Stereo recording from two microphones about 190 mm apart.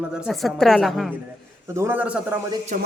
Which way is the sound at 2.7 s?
45° right (ahead or behind).